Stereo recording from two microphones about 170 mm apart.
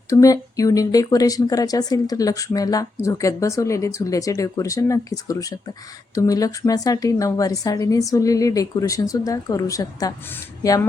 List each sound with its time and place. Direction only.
0.1 s speech: 20° left (ahead or behind)